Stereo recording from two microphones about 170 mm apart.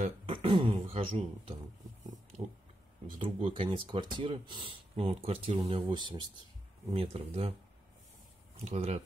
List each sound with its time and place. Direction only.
0.0 s speech: 35° right (ahead or behind)
3.1 s a sound: 30° right (ahead or behind)
3.3 s speech: 35° right (ahead or behind)
8.5 s speech: 40° right (ahead or behind)